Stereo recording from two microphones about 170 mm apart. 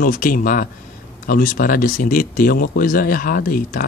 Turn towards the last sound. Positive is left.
turn(degrees=60)  # may be behind; listen again after turning